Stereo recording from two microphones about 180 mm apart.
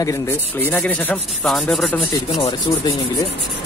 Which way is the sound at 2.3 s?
25° left (ahead or behind).